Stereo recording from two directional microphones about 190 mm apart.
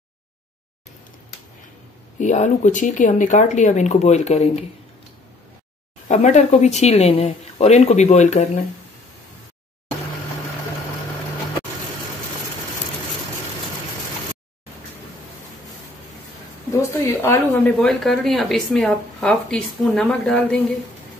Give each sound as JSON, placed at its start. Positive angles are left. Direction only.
{"t": 2.1, "sound": "speech", "side_deg": 40}
{"t": 6.0, "sound": "speech", "side_deg": 40}
{"t": 16.8, "sound": "a sound", "side_deg": 15}
{"t": 17.7, "sound": "speech", "side_deg": 0}